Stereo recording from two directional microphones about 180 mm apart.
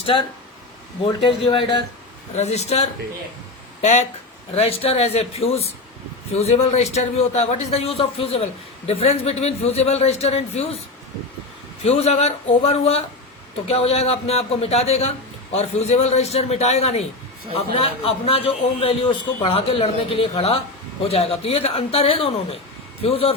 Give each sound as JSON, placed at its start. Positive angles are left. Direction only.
{"t": 1.0, "sound": "speech", "side_deg": 25}
{"t": 2.3, "sound": "a man's voice", "side_deg": 40}